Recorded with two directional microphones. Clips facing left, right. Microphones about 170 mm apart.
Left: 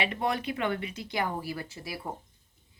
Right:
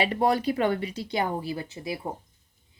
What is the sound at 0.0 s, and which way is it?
Speech, 35° right (ahead or behind).